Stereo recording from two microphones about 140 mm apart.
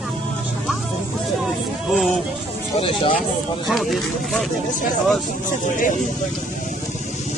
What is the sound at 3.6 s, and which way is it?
Speech, centre (ahead or behind).